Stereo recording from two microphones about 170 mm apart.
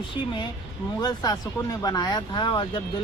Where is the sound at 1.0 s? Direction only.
25° left (ahead or behind).